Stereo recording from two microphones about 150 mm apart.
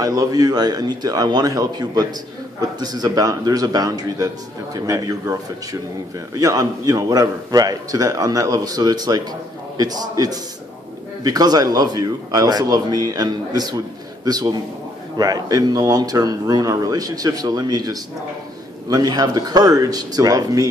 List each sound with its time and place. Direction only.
0.0 s speech: 25° right (ahead or behind)